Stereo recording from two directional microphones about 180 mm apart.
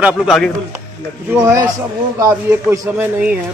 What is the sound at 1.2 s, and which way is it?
A man's voice, 15° right (ahead or behind).